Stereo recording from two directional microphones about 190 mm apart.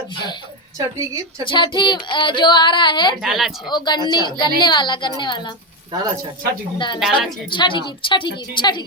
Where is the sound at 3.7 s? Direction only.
25° left (ahead or behind).